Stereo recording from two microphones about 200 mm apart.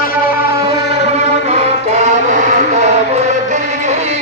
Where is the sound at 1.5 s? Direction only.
35° right (ahead or behind).